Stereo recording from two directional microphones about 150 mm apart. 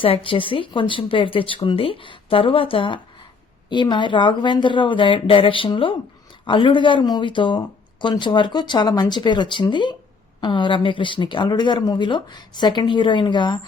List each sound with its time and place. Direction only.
0.0 s speech: 35° left (ahead or behind)